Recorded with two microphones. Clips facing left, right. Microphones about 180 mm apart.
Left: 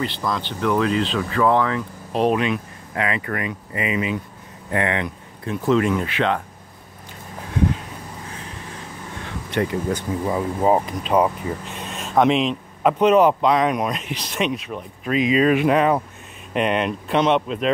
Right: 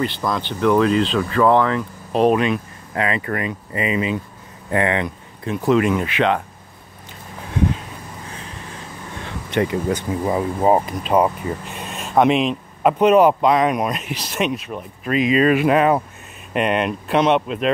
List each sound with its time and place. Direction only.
0.0 s speech: 50° right (ahead or behind)
0.7 s speech: 35° right (ahead or behind)
2.1 s speech: 50° right (ahead or behind); by 6.4 s 15° right (ahead or behind)
9.5 s speech: 20° right (ahead or behind); by 17.7 s centre (ahead or behind)